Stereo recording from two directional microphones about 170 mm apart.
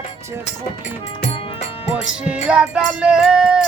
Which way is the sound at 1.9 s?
5° right (ahead or behind).